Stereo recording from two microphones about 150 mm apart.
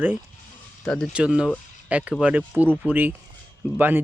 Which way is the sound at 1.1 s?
5° right (ahead or behind).